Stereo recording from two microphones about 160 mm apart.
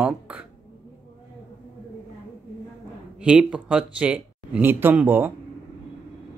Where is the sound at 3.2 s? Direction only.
5° right (ahead or behind).